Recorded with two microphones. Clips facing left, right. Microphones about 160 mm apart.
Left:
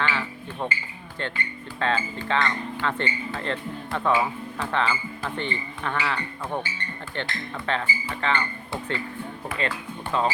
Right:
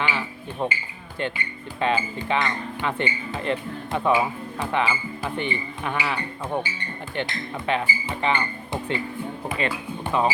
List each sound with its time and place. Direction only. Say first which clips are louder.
0.0 s music: even; 15° right (ahead or behind)
1.8 s speech: right 2 dB; 15° right (ahead or behind)